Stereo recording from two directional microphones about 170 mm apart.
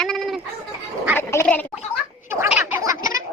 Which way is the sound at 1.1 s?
15° left (ahead or behind).